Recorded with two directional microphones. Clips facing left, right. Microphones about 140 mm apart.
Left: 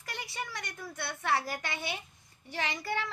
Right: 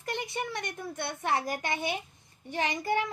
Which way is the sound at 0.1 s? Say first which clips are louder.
Right 6 dB; 20° right (ahead or behind).